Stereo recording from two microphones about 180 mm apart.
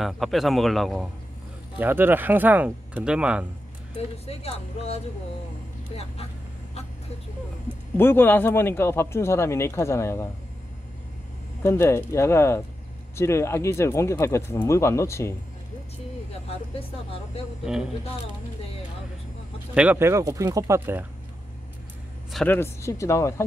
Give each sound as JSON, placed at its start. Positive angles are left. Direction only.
{"t": 0.0, "sound": "speech", "side_deg": 0}
{"t": 1.8, "sound": "speech", "side_deg": -10}
{"t": 4.3, "sound": "speech", "side_deg": 35}
{"t": 8.0, "sound": "speech", "side_deg": 10}
{"t": 11.6, "sound": "speech", "side_deg": 15}
{"t": 19.7, "sound": "speech", "side_deg": -10}
{"t": 22.3, "sound": "speech", "side_deg": 5}